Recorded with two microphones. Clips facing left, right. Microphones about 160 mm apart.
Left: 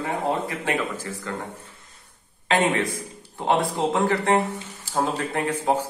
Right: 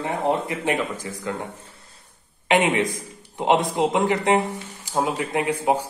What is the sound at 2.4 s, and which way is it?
Speech, 15° right (ahead or behind).